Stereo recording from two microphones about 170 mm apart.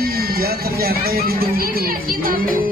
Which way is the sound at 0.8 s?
65° right (ahead or behind).